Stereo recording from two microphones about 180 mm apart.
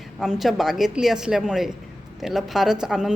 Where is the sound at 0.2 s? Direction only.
Centre (ahead or behind).